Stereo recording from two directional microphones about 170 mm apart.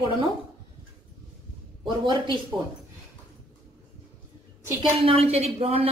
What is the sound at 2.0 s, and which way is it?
Speech, 30° right (ahead or behind).